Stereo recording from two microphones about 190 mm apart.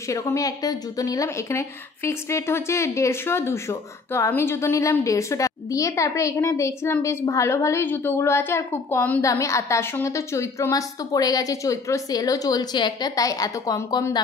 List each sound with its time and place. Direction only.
0.1 s a woman's voice: 15° left (ahead or behind)